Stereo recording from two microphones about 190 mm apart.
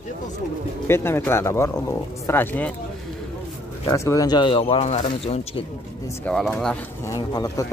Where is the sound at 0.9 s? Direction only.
15° left (ahead or behind).